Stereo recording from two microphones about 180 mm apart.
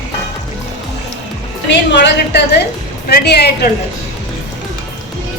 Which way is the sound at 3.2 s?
65° left (ahead or behind).